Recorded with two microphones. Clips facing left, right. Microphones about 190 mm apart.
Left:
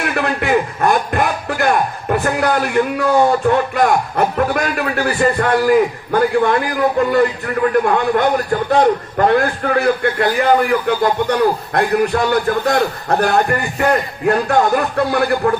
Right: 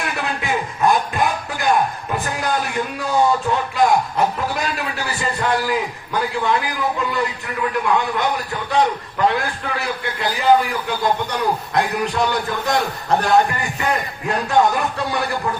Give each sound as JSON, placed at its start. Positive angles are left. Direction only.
{"t": 0.0, "sound": "speech", "side_deg": 60}